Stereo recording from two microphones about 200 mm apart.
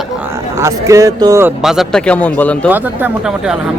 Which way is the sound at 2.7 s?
10° right (ahead or behind).